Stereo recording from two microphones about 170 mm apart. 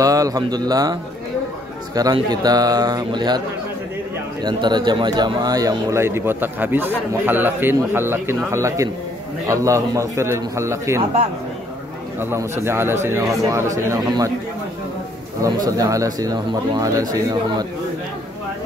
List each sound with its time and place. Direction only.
0.0 s speech: 20° right (ahead or behind)
2.1 s speech: 25° right (ahead or behind)
12.2 s speech: 15° right (ahead or behind)
15.4 s speech: 20° right (ahead or behind)